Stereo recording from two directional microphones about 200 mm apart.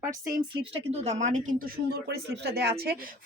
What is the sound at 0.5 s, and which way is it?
Speech, 25° right (ahead or behind).